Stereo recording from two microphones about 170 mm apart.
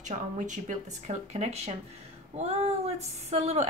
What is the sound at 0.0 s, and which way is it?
A woman's voice, 45° right (ahead or behind).